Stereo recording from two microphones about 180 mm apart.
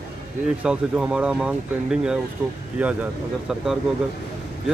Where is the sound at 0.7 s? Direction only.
5° right (ahead or behind).